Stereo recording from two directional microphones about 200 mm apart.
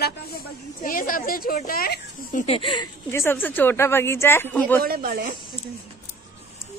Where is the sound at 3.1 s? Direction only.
10° left (ahead or behind).